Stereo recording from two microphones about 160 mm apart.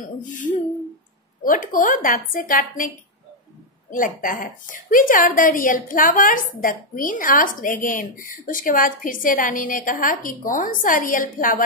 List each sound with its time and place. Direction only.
0.3 s a woman's voice: 50° left (ahead or behind)
3.9 s a woman's voice: 55° left (ahead or behind)